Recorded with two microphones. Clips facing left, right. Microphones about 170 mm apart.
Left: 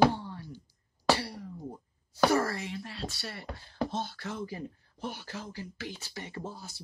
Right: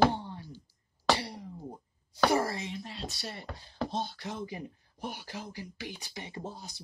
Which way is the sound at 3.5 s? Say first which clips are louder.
Even; 20° right (ahead or behind).